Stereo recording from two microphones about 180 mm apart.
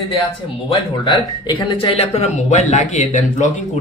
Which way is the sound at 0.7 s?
25° left (ahead or behind).